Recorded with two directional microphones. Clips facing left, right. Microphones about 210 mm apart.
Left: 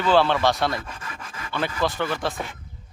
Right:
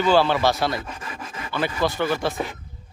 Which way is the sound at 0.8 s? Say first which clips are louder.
Right 3 dB; 25° right (ahead or behind).